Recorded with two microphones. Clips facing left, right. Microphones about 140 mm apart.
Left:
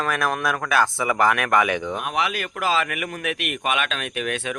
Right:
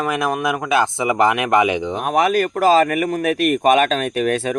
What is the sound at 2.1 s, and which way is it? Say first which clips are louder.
Speech: right 13 dB; 45° right (ahead or behind).